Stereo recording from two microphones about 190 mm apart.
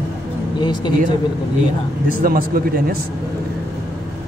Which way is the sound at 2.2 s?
50° right (ahead or behind).